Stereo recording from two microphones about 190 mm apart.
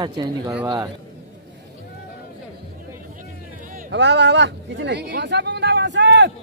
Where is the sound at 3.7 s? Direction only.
60° right (ahead or behind).